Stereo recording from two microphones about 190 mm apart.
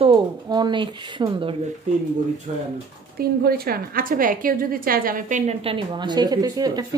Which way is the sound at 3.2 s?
55° right (ahead or behind).